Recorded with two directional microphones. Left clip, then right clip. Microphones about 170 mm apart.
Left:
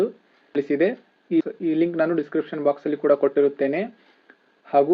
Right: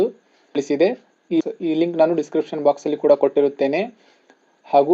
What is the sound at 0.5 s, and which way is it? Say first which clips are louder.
Speech: right 3 dB; 15° right (ahead or behind).